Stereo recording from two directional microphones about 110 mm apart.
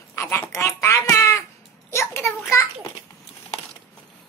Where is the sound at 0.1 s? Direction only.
25° left (ahead or behind).